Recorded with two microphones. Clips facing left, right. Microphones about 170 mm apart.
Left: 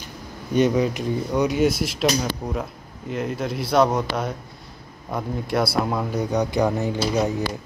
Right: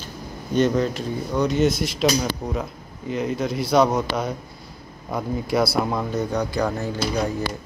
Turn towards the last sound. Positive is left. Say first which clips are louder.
# left 2 dB
turn(degrees=20)  # may be behind; listen again after turning